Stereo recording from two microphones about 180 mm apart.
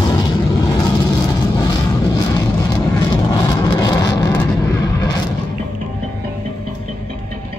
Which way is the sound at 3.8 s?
20° left (ahead or behind).